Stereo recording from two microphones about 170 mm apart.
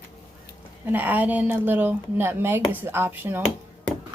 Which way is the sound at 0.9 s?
10° right (ahead or behind).